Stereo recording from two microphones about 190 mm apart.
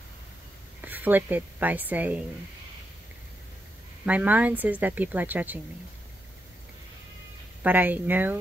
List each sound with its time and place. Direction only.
0.8 s speech: 10° right (ahead or behind)
4.0 s speech: 10° right (ahead or behind)
7.6 s speech: 10° right (ahead or behind)